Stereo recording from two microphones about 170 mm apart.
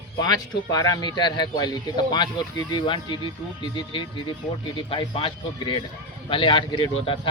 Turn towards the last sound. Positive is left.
turn(degrees=30)  # may be behind; listen again after turning